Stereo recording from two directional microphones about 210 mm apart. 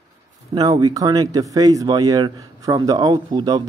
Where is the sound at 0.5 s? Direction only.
20° right (ahead or behind).